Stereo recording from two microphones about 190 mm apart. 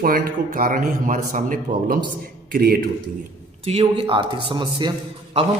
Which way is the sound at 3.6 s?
30° right (ahead or behind).